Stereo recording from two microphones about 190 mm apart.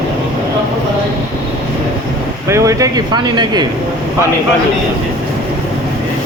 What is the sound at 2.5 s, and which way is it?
Speech, 15° right (ahead or behind).